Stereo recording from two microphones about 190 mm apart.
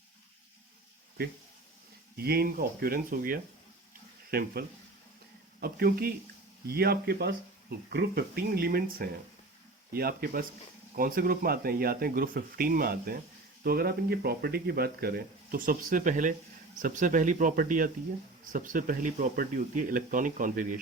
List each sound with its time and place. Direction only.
2.1 s speech: 55° right (ahead or behind)